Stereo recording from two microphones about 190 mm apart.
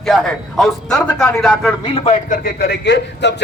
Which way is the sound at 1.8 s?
30° left (ahead or behind).